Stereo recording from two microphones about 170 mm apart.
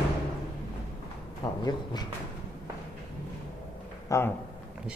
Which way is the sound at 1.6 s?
25° left (ahead or behind).